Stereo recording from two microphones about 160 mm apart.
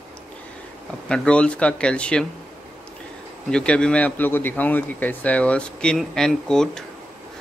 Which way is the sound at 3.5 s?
5° left (ahead or behind).